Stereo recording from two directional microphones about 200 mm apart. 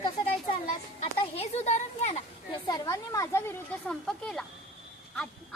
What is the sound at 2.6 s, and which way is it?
Speech, 15° left (ahead or behind).